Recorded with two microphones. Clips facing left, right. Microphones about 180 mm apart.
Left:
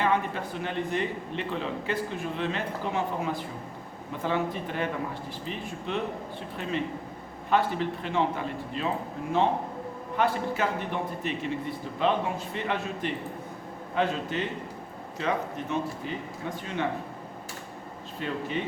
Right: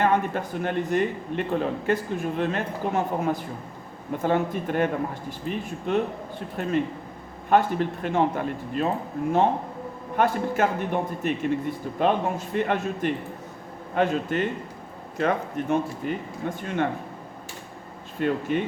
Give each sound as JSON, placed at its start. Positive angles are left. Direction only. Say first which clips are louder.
{"t": 0.0, "sound": "a man's voice", "louder": "right 4 dB", "side_deg": -50}
{"t": 10.2, "sound": "a man's voice", "louder": "right 4 dB", "side_deg": -50}
{"t": 18.2, "sound": "a man's voice", "louder": "right 7 dB", "side_deg": -55}